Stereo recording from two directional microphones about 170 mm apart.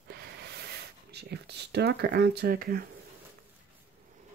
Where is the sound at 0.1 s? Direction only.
75° right (ahead or behind).